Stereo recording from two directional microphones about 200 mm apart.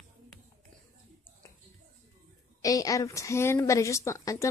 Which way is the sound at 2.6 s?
15° left (ahead or behind).